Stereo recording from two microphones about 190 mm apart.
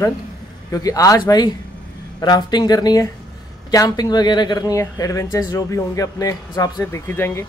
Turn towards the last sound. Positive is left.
turn(degrees=15)  # may be behind; listen again after turning